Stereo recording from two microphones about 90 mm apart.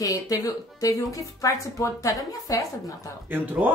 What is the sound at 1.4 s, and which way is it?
A woman's voice, 40° left (ahead or behind).